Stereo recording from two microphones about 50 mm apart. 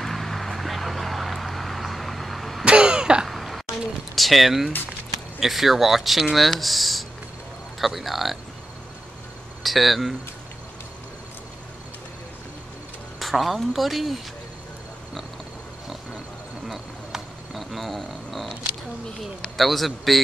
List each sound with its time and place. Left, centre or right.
0.0 s vehicle: centre
2.6 s throat clearing: centre
3.3 s throat clearing: centre
4.1 s speech: centre
9.6 s cricket: centre
13.2 s speech: centre
16.6 s a sound: centre
19.5 s speech: centre